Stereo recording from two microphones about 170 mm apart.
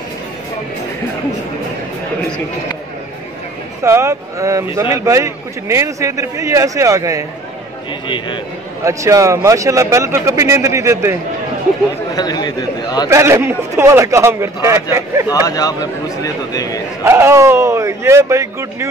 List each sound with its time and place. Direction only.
3.8 s a man's voice: 15° right (ahead or behind)
8.8 s a man's voice: 20° right (ahead or behind)
12.1 s a man's voice: 25° left (ahead or behind)
13.1 s a man's voice: 15° right (ahead or behind)
15.4 s a man's voice: 20° left (ahead or behind)
17.0 s a man's voice: 15° right (ahead or behind)